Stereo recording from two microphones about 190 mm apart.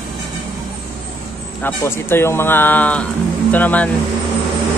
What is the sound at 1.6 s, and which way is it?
Speech, 10° left (ahead or behind).